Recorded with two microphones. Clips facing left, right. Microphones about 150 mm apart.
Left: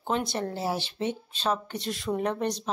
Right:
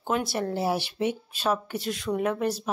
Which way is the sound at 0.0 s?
5° right (ahead or behind).